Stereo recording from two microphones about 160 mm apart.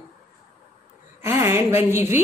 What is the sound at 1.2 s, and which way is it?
A woman's voice, 15° right (ahead or behind).